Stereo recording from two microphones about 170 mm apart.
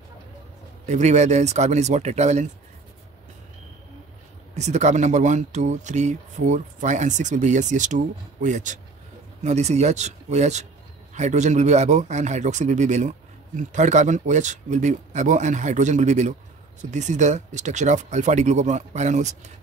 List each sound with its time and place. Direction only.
0.8 s speech: 45° right (ahead or behind)
4.6 s speech: 40° right (ahead or behind)